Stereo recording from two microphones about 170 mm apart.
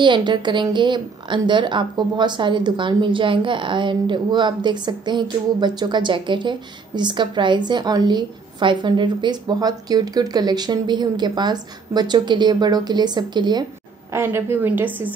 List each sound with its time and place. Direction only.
0.0 s a woman's voice: 25° right (ahead or behind)
14.1 s a woman's voice: 15° right (ahead or behind)